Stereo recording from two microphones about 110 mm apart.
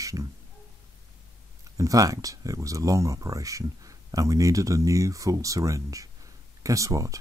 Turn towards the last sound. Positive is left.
turn(degrees=-30)  # may be behind; listen again after turning